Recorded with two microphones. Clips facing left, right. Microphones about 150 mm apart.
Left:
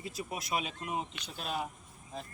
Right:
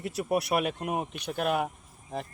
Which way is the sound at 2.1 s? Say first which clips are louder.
Right 8 dB; 75° right (ahead or behind).